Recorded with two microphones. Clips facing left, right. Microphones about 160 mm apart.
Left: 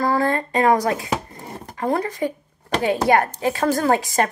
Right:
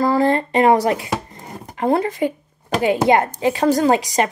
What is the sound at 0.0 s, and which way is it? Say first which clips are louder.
A woman's voice: right 4 dB; 20° right (ahead or behind).